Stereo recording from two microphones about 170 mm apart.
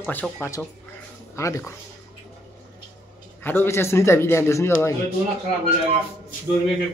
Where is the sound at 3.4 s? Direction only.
15° left (ahead or behind).